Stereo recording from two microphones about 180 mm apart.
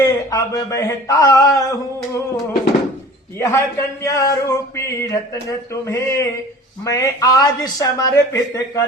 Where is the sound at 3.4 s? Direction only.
15° left (ahead or behind).